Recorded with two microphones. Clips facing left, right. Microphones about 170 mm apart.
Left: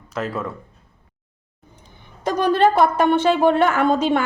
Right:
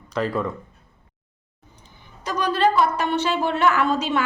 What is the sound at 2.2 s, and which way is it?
A woman's voice, 55° left (ahead or behind).